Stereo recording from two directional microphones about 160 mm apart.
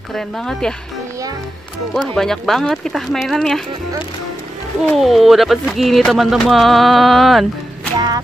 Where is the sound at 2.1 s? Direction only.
Centre (ahead or behind).